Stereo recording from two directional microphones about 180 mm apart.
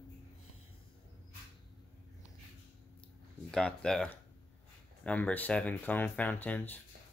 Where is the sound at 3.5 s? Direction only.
5° left (ahead or behind).